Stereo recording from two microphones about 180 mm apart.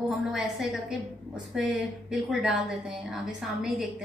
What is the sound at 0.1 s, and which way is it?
A woman's voice, centre (ahead or behind).